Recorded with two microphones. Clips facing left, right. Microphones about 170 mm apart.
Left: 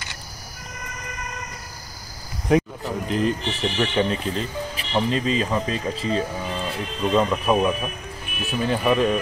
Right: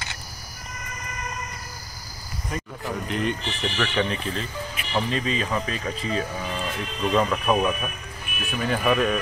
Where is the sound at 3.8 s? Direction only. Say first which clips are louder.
Left 3 dB; 25° left (ahead or behind).